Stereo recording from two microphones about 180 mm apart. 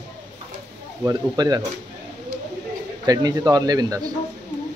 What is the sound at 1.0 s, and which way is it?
Speech, 20° right (ahead or behind).